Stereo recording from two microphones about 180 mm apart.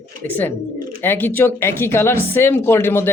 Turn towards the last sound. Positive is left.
turn(degrees=15)  # may be behind; listen again after turning